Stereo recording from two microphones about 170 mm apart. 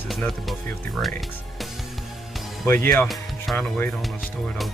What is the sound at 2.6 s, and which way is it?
Speech, 15° left (ahead or behind).